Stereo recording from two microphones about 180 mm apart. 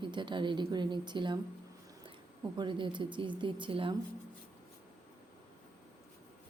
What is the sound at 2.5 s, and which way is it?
A woman's voice, 25° right (ahead or behind).